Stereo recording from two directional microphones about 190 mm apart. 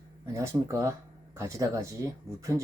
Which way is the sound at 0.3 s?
15° right (ahead or behind).